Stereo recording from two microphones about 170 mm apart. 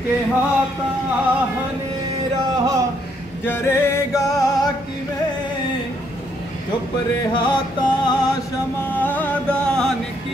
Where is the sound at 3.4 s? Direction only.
15° left (ahead or behind).